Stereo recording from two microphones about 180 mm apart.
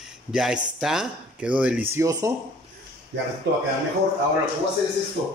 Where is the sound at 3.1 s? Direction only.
85° right.